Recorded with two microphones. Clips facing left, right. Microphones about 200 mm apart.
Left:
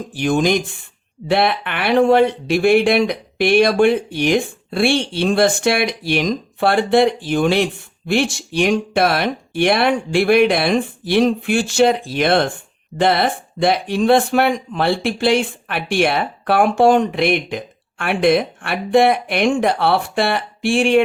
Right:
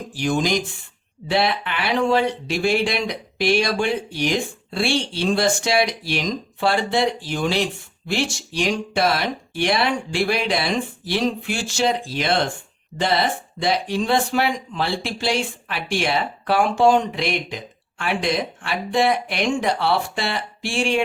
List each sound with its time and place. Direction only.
0.1 s speech: 55° left (ahead or behind)